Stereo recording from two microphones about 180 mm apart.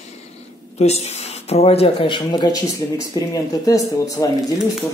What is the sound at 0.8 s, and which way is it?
Speech, 40° left (ahead or behind).